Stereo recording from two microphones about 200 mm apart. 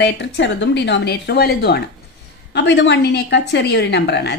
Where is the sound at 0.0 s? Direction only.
60° left (ahead or behind).